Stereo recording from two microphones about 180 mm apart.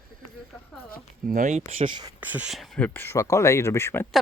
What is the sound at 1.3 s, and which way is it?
Speech, 45° right (ahead or behind).